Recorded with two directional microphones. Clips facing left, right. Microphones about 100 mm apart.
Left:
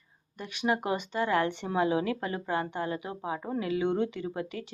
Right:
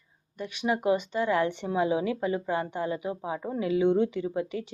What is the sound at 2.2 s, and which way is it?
Speech, 50° left (ahead or behind).